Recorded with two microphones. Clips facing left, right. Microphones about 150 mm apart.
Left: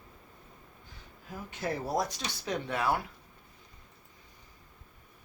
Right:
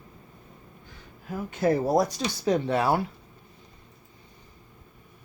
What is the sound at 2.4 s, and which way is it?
Speech, 35° right (ahead or behind).